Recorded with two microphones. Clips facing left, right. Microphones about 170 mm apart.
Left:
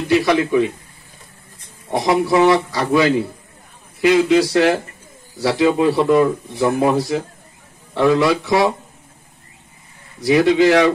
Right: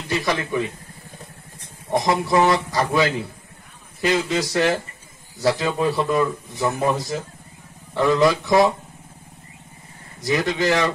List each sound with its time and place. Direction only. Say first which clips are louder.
0.1 s a man's voice: left 8 dB; 65° left (ahead or behind)
1.9 s a man's voice: left 4 dB; 60° left (ahead or behind)
4.0 s a man's voice: left 8 dB; 60° left (ahead or behind)
10.2 s a man's voice: left 8 dB; 60° left (ahead or behind)